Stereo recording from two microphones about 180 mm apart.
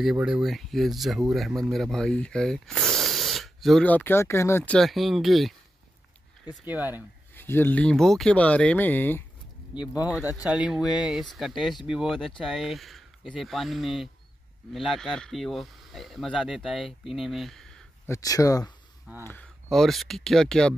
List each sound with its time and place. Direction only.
0.0 s speech: 5° right (ahead or behind); by 4.7 s 15° left (ahead or behind)
4.7 s speech: centre (ahead or behind)
6.6 s speech: 10° right (ahead or behind)
7.3 s speech: 10° left (ahead or behind)
9.9 s speech: 5° right (ahead or behind)
18.0 s speech: 20° left (ahead or behind)
19.1 s speech: 10° right (ahead or behind)